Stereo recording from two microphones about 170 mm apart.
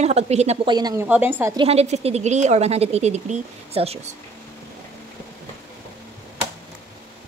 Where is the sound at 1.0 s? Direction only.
10° right (ahead or behind).